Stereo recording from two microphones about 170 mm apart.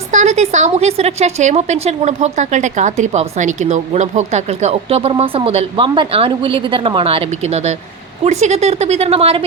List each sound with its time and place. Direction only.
0.1 s a woman's voice: 45° right (ahead or behind)